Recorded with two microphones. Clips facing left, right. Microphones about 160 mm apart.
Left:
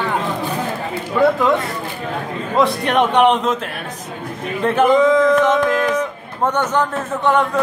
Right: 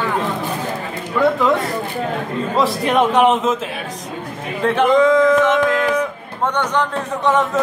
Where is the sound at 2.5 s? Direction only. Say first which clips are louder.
Left 1 dB; centre (ahead or behind).